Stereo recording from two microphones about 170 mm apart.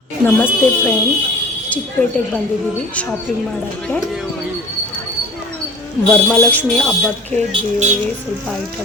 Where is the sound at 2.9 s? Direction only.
10° left (ahead or behind).